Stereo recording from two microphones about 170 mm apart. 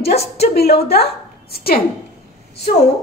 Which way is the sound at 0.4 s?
65° left (ahead or behind).